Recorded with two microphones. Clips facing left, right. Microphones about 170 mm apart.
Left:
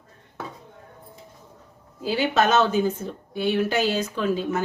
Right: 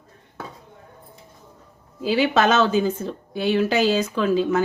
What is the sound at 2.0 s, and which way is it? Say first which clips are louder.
Speech: right 3 dB; 90° right.